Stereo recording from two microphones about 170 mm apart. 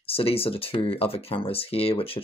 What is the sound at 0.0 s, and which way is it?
Speech, 35° left (ahead or behind).